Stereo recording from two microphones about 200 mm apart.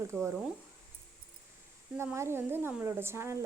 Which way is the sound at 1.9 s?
15° right (ahead or behind).